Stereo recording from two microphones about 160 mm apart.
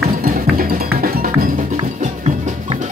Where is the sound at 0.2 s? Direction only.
65° right (ahead or behind).